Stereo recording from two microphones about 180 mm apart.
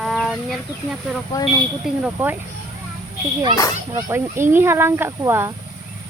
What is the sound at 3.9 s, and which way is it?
Speech, 15° right (ahead or behind).